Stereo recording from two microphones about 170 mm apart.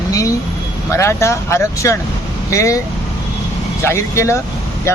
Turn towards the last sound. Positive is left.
turn(degrees=15)  # may be behind; listen again after turning